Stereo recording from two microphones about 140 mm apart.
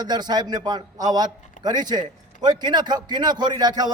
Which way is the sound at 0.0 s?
30° right (ahead or behind).